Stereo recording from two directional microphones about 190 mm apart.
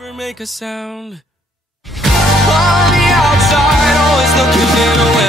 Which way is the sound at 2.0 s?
Centre (ahead or behind).